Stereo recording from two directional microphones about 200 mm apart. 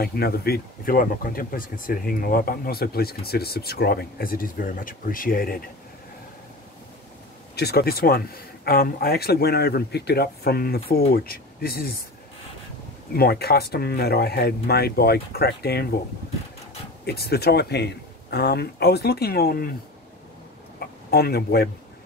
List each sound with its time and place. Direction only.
0.0 s speech: 50° left (ahead or behind)
7.5 s speech: 50° left (ahead or behind)
13.1 s speech: 50° left (ahead or behind)
17.0 s speech: 50° left (ahead or behind)
20.8 s speech: 50° left (ahead or behind)